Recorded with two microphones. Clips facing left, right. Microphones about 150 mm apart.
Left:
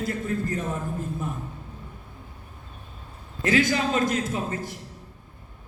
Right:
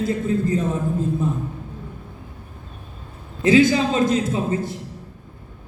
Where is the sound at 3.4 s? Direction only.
25° right (ahead or behind).